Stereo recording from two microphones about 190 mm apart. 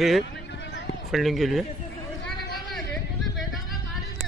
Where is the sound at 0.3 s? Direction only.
65° left (ahead or behind).